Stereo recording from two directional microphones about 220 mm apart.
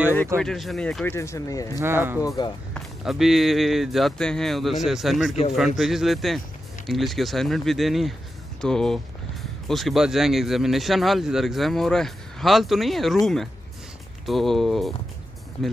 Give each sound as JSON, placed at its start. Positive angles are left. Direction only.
{"t": 0.4, "sound": "speech", "side_deg": 0}
{"t": 1.8, "sound": "speech", "side_deg": -10}
{"t": 2.2, "sound": "speech", "side_deg": 20}
{"t": 2.7, "sound": "speech", "side_deg": 0}
{"t": 5.3, "sound": "a man's voice", "side_deg": 30}
{"t": 5.8, "sound": "speech", "side_deg": 0}
{"t": 14.2, "sound": "speech", "side_deg": 0}